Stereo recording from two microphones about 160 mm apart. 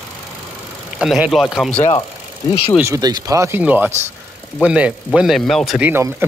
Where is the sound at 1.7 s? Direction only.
25° left (ahead or behind).